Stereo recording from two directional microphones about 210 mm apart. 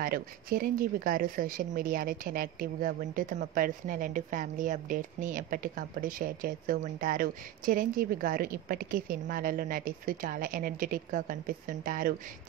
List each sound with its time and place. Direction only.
0.0 s speech: 45° right (ahead or behind)